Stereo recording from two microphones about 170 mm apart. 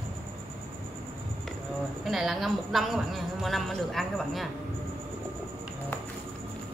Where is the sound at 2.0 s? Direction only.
Centre (ahead or behind).